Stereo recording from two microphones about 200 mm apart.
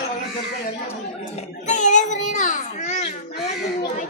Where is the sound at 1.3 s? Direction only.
35° left (ahead or behind).